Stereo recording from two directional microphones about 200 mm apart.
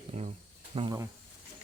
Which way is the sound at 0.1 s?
30° right (ahead or behind).